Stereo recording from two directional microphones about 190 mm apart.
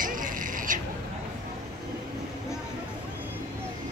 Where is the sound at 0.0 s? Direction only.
45° right (ahead or behind).